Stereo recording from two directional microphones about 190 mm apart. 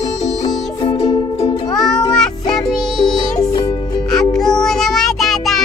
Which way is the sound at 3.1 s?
20° left (ahead or behind).